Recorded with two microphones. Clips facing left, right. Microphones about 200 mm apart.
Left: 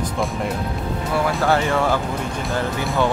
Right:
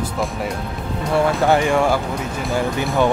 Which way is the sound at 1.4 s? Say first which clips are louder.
Right 1 dB; 15° right (ahead or behind).